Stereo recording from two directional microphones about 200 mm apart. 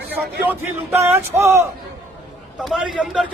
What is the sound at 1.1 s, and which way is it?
Speech, 10° right (ahead or behind).